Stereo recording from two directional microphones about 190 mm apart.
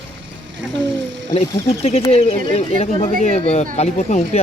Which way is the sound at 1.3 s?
30° left (ahead or behind).